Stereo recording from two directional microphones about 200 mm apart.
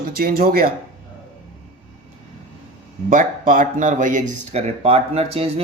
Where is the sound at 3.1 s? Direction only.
45° right (ahead or behind).